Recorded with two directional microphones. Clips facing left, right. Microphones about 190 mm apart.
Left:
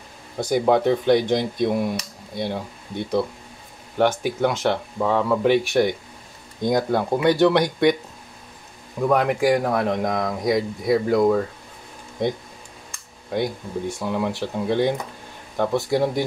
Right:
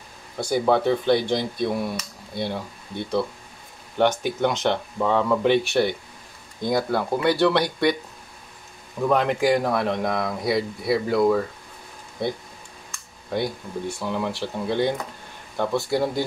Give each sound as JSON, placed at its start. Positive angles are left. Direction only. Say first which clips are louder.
{"t": 0.4, "sound": "speech", "louder": "left 2 dB", "side_deg": 15}
{"t": 4.0, "sound": "speech", "louder": "left 1 dB", "side_deg": 10}
{"t": 9.0, "sound": "speech", "louder": "left 1 dB", "side_deg": 10}
{"t": 13.3, "sound": "speech", "louder": "left 2 dB", "side_deg": 20}